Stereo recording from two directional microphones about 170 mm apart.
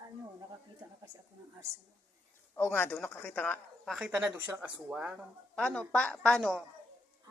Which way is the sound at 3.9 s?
5° right (ahead or behind).